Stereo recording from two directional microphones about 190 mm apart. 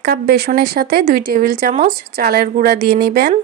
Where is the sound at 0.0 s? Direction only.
55° right (ahead or behind).